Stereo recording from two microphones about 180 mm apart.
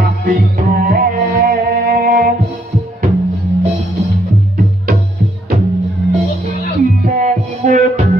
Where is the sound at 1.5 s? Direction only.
55° right (ahead or behind).